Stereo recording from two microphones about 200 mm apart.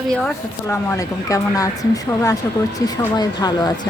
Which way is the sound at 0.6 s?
15° left (ahead or behind).